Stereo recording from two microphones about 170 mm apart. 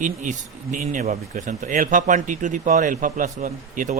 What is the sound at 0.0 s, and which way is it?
Speech, 50° right (ahead or behind).